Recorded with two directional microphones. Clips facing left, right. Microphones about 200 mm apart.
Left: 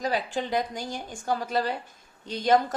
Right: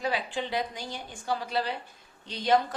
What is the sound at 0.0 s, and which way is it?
A woman's voice, 45° left (ahead or behind).